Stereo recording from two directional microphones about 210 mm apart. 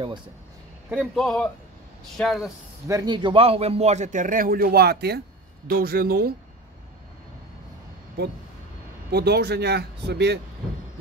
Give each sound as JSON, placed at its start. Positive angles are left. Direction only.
{"t": 0.8, "sound": "a man's voice", "side_deg": -5}
{"t": 2.9, "sound": "a man's voice", "side_deg": -20}
{"t": 9.1, "sound": "speech", "side_deg": -50}